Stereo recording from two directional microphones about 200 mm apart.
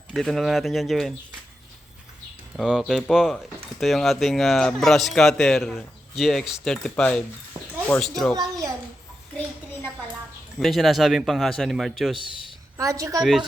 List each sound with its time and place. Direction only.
0.1 s speech: centre (ahead or behind)
2.6 s speech: centre (ahead or behind)
8.4 s a child's voice: 15° right (ahead or behind)
10.6 s speech: centre (ahead or behind)
12.7 s a woman's voice: 15° right (ahead or behind)